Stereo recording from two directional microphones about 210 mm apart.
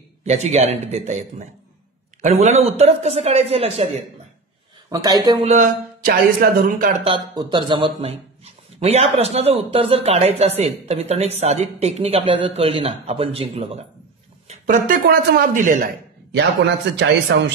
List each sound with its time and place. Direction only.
0.2 s a man's voice: 30° right (ahead or behind)
2.2 s speech: 30° right (ahead or behind)
4.8 s speech: 15° right (ahead or behind)
5.4 s a man's voice: 35° right (ahead or behind)
6.0 s speech: 45° right (ahead or behind)
7.1 s a man's voice: 25° right (ahead or behind); by 15.9 s 40° right (ahead or behind)
16.3 s a man's voice: 55° right (ahead or behind)